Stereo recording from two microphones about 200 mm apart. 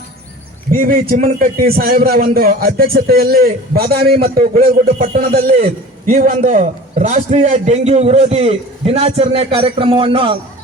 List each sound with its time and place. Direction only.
0.7 s a man's voice: 45° right (ahead or behind); by 10.3 s 25° right (ahead or behind)